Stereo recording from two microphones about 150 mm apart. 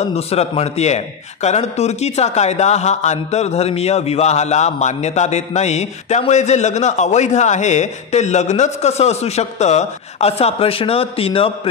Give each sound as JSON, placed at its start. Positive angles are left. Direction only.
{"t": 0.1, "sound": "a man's voice", "side_deg": 45}